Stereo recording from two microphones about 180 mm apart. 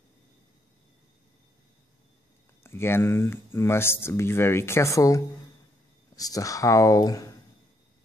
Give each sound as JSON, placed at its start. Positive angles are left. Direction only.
{"t": 2.6, "sound": "speech", "side_deg": 15}